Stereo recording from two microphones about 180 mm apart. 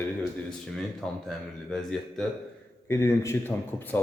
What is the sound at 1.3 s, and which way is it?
Speech, centre (ahead or behind).